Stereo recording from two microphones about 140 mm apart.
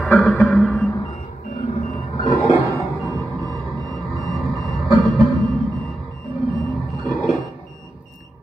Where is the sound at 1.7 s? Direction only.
50° left (ahead or behind).